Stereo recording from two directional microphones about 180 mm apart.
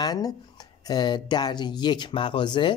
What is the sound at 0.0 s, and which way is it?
Speech, 20° left (ahead or behind).